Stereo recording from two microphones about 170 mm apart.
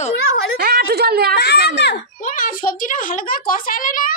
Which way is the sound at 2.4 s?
55° left (ahead or behind).